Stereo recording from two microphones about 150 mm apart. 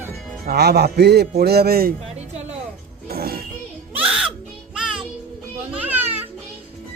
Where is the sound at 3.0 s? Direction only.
90° right.